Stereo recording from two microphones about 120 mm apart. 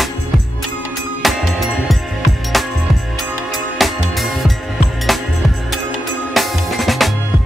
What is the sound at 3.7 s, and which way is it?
Music, centre (ahead or behind).